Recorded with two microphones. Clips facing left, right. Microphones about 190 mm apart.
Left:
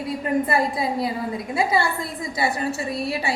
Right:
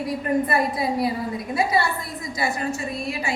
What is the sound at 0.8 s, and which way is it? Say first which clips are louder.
Speech: right 1 dB; 25° left (ahead or behind).